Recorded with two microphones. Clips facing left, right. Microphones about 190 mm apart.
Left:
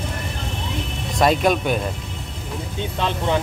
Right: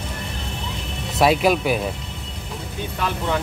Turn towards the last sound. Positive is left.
turn(degrees=25)  # may be behind; listen again after turning